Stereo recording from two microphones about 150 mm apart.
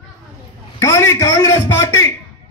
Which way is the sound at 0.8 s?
20° left (ahead or behind).